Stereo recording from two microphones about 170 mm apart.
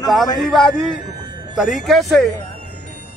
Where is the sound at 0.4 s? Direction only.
Centre (ahead or behind).